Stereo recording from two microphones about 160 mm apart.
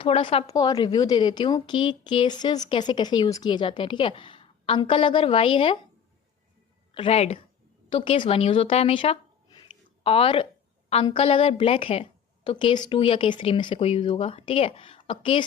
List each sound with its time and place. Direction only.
0.0 s a woman's voice: 35° left (ahead or behind)
0.4 s speech: 20° left (ahead or behind)
6.9 s a woman's voice: 40° left (ahead or behind)